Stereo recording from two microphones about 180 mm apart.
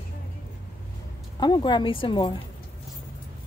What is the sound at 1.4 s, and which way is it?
Speech, 25° left (ahead or behind).